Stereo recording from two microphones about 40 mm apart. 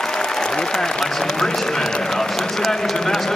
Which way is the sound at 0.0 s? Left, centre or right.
Centre.